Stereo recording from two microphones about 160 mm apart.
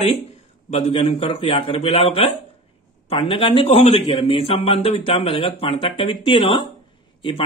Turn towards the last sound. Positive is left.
turn(degrees=35)  # may be behind; listen again after turning